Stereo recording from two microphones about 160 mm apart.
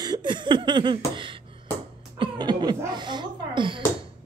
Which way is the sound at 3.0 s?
30° right (ahead or behind).